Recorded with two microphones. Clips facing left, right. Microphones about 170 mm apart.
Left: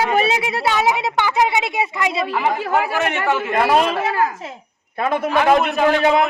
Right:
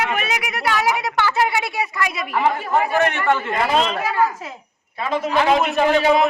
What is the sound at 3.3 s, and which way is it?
Speech, 5° left (ahead or behind).